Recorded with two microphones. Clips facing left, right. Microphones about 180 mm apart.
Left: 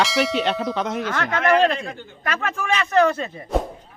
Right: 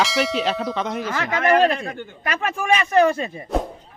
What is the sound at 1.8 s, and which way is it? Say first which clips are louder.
Speech: right 2 dB; 55° right (ahead or behind).